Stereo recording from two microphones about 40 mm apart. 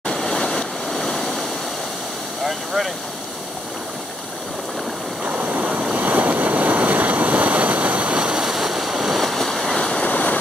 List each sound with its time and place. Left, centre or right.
0.1 s waterfall: centre
2.4 s vehicle: centre
5.2 s stream: right
5.9 s waves: right
8.5 s waves: centre
9.8 s waves: centre
10.0 s a sound: left